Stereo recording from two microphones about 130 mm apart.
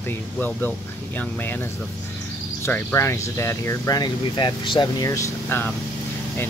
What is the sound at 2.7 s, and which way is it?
Speech, 20° left (ahead or behind).